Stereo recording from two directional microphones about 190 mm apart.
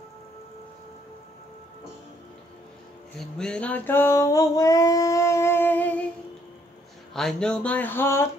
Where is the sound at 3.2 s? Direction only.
5° left (ahead or behind).